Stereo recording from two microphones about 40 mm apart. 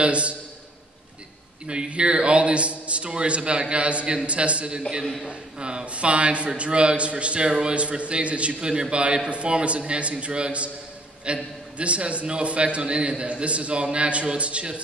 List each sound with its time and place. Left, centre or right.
0.0 s a man's voice: right
1.7 s a man's voice: right
5.0 s a man's voice: centre
5.3 s a man's voice: right